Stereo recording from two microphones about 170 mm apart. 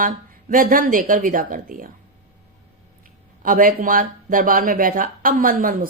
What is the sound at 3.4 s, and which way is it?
Speech, 55° right (ahead or behind).